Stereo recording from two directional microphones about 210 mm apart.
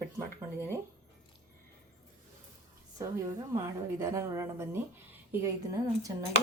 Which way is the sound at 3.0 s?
15° right (ahead or behind).